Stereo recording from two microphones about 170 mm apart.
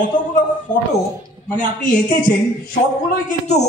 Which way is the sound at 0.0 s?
50° left (ahead or behind).